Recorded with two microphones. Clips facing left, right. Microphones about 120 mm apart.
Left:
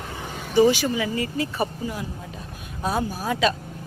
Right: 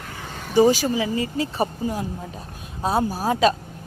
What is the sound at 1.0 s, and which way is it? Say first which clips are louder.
Speech: right 2 dB; 25° right (ahead or behind).